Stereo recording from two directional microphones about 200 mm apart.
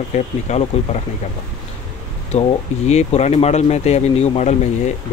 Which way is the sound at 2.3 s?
35° left (ahead or behind).